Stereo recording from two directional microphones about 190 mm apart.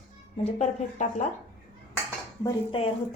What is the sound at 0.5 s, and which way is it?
Speech, 40° left (ahead or behind).